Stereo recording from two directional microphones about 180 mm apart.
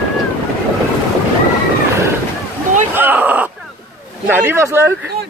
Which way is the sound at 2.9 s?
10° right (ahead or behind).